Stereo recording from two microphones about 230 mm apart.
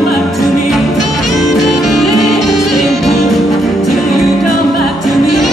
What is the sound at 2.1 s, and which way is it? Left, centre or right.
Music, left.